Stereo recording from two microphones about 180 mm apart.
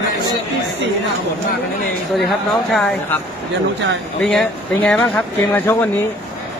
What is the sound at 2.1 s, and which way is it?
Speech, centre (ahead or behind).